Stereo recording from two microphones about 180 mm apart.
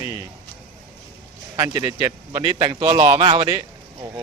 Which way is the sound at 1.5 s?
20° right (ahead or behind).